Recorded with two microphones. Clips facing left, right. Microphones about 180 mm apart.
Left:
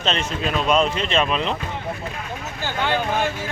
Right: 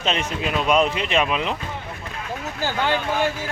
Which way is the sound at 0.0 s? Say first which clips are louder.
Even; 10° right (ahead or behind).